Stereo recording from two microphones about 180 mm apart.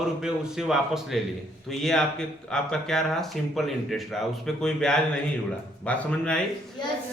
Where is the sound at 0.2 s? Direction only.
5° right (ahead or behind).